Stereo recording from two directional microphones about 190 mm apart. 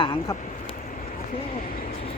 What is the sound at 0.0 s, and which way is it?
Speech, 25° left (ahead or behind).